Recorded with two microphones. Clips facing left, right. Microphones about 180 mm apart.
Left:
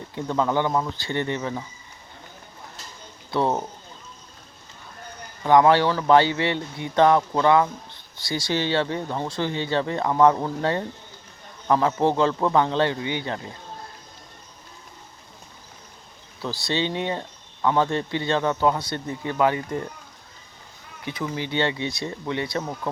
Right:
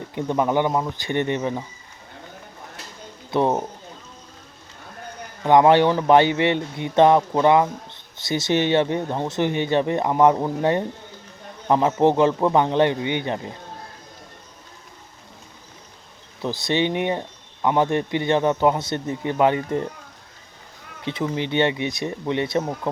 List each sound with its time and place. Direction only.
0.2 s speech: 20° right (ahead or behind)
3.3 s speech: 20° right (ahead or behind)
5.4 s speech: 20° right (ahead or behind)
16.4 s speech: 20° right (ahead or behind)
21.0 s speech: 25° right (ahead or behind)